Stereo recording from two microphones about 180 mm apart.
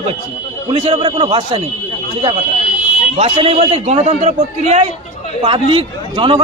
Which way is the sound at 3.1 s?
35° right (ahead or behind).